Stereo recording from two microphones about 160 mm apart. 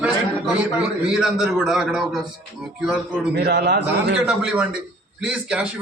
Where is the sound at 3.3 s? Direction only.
90° right.